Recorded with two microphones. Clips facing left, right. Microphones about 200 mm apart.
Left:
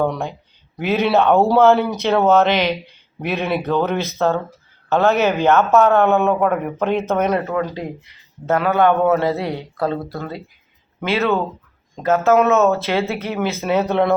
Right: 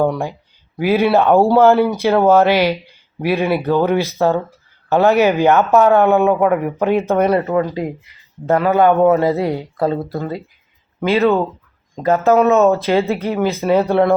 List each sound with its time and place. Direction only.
0.0 s speech: 10° right (ahead or behind)